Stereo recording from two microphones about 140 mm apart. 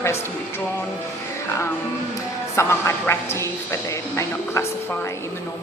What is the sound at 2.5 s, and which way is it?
A woman's voice, 20° left (ahead or behind).